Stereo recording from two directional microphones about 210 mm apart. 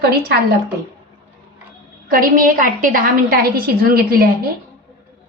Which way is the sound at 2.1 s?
40° right (ahead or behind).